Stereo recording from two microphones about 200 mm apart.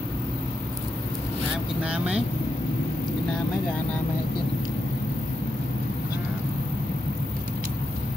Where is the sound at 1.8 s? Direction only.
5° right (ahead or behind).